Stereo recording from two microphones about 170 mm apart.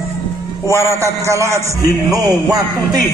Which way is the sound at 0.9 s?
15° right (ahead or behind).